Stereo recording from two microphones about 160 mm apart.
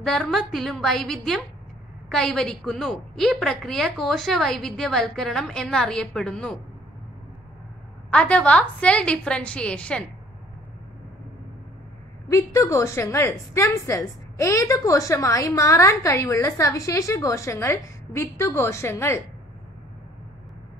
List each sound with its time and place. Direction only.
0.0 s a woman's voice: centre (ahead or behind)
8.1 s a woman's voice: 5° left (ahead or behind)
12.3 s a woman's voice: 20° left (ahead or behind)